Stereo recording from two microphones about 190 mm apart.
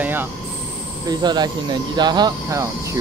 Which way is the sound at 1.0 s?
20° right (ahead or behind).